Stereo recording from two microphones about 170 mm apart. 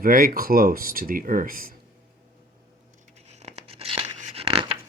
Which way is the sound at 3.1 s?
40° right (ahead or behind).